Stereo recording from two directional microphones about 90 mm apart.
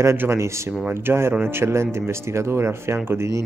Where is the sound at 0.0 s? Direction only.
30° right (ahead or behind).